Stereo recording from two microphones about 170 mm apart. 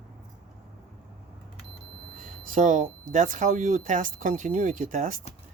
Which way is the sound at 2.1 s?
50° right (ahead or behind).